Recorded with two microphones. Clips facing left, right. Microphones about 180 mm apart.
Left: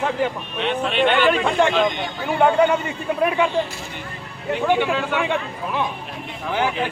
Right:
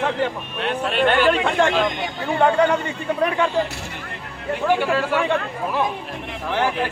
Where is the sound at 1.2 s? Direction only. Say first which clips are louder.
Even; 5° left (ahead or behind).